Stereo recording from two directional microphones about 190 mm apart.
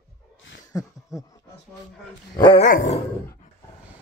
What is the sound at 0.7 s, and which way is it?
Speech, 20° left (ahead or behind).